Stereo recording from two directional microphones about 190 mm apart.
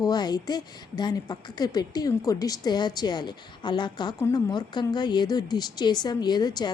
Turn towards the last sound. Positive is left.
turn(degrees=20)  # may be behind; listen again after turning